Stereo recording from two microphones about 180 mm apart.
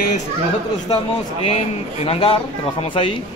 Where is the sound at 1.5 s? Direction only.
30° left (ahead or behind).